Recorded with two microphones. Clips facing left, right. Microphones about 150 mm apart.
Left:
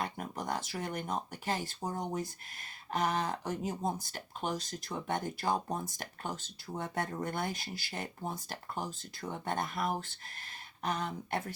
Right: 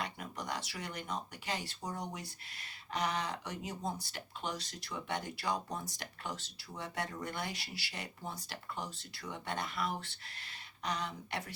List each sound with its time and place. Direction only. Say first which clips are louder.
0.0 s speech: left 4 dB; 50° left (ahead or behind)